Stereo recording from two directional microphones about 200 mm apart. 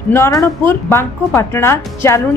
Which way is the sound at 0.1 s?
15° left (ahead or behind).